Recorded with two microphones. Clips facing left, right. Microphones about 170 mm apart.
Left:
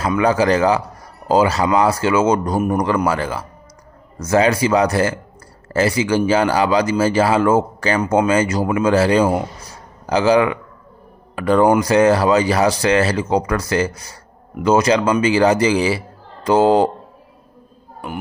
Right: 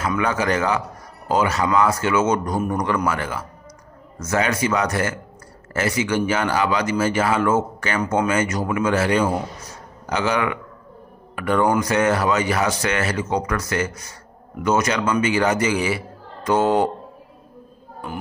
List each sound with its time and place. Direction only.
0.0 s a man's voice: 35° left (ahead or behind)